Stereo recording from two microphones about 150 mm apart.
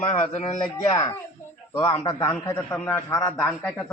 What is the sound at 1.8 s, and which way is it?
Speech, 35° left (ahead or behind).